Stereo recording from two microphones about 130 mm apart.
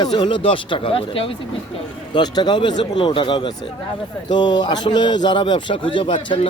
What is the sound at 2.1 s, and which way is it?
A man's voice, 35° left (ahead or behind).